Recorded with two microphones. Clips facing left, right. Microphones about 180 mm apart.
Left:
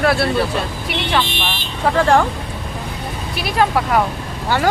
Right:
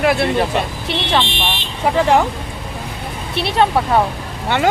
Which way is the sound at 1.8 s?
10° right (ahead or behind).